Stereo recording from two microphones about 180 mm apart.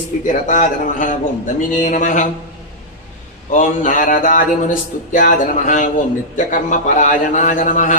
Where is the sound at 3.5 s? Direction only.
45° left (ahead or behind).